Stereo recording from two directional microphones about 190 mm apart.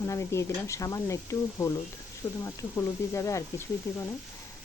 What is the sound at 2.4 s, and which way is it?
Speech, 15° left (ahead or behind).